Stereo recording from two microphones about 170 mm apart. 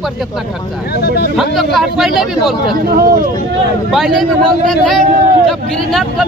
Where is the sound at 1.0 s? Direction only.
70° left (ahead or behind).